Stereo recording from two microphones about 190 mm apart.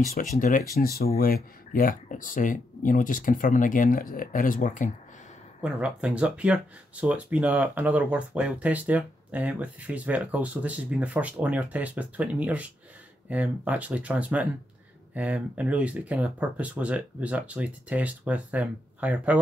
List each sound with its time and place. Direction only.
0.1 s speech: 45° left (ahead or behind)
5.6 s speech: 5° right (ahead or behind)